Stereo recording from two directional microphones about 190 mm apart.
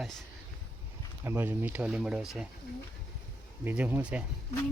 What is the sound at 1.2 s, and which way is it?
Speech, 10° right (ahead or behind).